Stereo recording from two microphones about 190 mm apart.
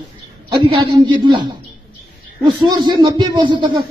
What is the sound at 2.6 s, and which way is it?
A man's voice, 25° right (ahead or behind).